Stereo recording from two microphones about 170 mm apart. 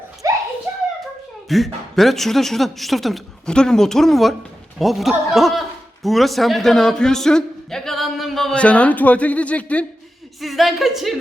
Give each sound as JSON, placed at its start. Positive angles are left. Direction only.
{"t": 0.2, "sound": "a sound", "side_deg": -20}
{"t": 0.7, "sound": "hands", "side_deg": -10}
{"t": 1.5, "sound": "speech", "side_deg": 0}